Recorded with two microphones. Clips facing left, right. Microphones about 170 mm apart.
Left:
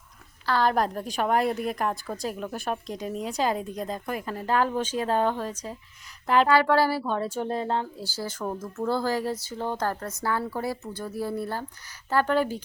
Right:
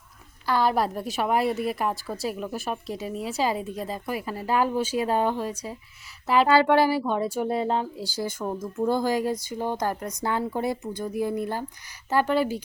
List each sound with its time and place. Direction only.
0.4 s a woman's voice: 10° right (ahead or behind)
6.5 s speech: 20° right (ahead or behind)